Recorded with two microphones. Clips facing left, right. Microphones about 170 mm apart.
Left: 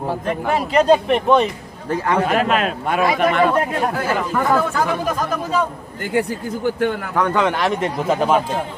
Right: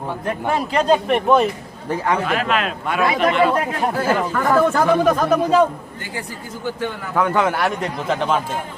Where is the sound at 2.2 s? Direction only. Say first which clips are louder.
Left 3 dB; 40° left (ahead or behind).